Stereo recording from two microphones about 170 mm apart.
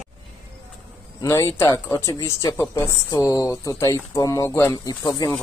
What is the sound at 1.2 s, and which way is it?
Speech, 15° left (ahead or behind).